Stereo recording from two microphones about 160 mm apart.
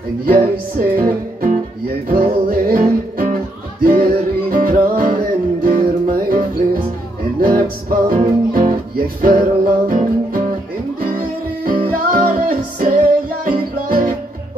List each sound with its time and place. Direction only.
0.2 s music: 65° right (ahead or behind)